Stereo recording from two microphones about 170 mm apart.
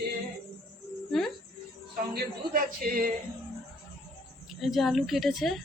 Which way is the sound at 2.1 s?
55° right (ahead or behind).